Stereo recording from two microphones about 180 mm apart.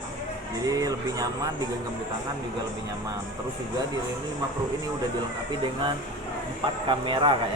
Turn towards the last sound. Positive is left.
turn(degrees=-30)  # may be behind; listen again after turning